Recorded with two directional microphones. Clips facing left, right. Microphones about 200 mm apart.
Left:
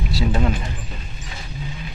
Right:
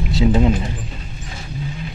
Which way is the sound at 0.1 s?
20° right (ahead or behind).